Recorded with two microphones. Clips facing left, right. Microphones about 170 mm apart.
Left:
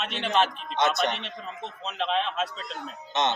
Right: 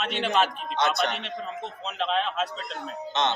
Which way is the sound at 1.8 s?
Centre (ahead or behind).